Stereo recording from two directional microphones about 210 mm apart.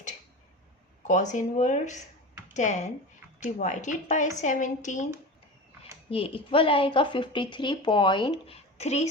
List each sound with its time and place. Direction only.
1.0 s speech: 35° left (ahead or behind)